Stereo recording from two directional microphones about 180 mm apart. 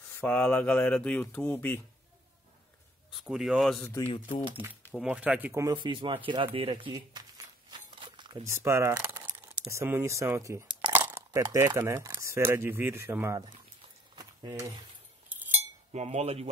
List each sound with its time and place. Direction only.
0.2 s speech: 10° left (ahead or behind)
3.1 s speech: centre (ahead or behind)
3.8 s speech: 10° left (ahead or behind)
4.9 s speech: 5° right (ahead or behind); by 7.2 s 25° right (ahead or behind)
7.9 s a sound: 25° right (ahead or behind)
8.5 s speech: 15° right (ahead or behind)
14.1 s a sound: 25° right (ahead or behind)
15.9 s cutlery: 35° right (ahead or behind)